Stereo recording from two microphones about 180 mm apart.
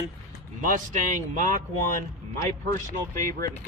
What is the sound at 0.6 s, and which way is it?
Speech, 45° right (ahead or behind).